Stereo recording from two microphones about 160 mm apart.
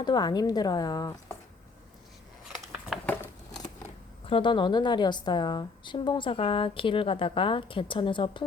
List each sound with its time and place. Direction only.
0.0 s speech: 25° left (ahead or behind)
2.9 s a sound: centre (ahead or behind)
4.3 s a woman's voice: 30° left (ahead or behind)